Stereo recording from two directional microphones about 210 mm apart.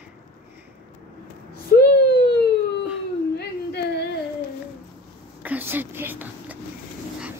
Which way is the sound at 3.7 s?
50° left (ahead or behind).